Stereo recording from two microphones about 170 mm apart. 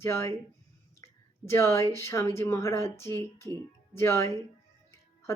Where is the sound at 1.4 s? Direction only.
15° left (ahead or behind).